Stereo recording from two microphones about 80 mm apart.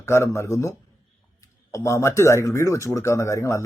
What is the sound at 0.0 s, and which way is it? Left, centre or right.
Speech, left.